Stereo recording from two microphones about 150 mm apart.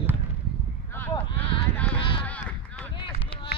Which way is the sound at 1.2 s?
35° left (ahead or behind).